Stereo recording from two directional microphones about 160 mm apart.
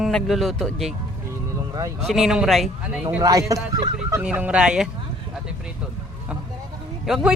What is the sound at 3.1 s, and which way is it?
Speech, 20° right (ahead or behind).